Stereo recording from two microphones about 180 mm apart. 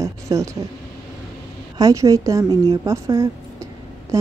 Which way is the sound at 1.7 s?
20° right (ahead or behind).